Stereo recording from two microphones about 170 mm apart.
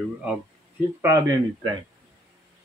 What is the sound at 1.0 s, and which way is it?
Speech, 20° right (ahead or behind).